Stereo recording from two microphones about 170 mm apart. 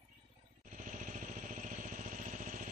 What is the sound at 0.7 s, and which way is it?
Vehicle, 50° right (ahead or behind).